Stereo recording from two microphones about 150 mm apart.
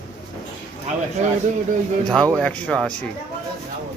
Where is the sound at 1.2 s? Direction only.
55° right (ahead or behind).